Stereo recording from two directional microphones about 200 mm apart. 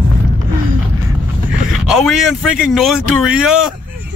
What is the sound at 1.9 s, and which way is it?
Speech, centre (ahead or behind).